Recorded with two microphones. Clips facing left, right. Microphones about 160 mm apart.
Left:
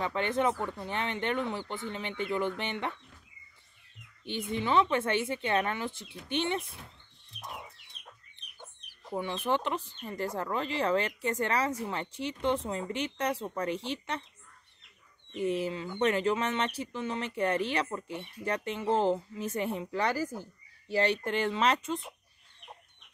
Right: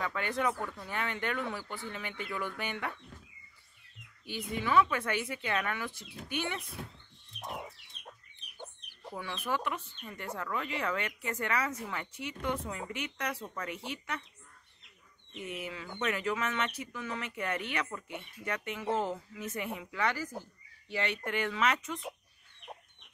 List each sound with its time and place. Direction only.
0.0 s speech: 25° left (ahead or behind)
4.3 s speech: 25° left (ahead or behind)
9.1 s speech: 25° left (ahead or behind)
15.3 s speech: 30° left (ahead or behind)